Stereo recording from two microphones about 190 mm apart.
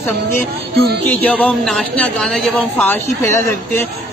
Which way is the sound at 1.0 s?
10° left (ahead or behind).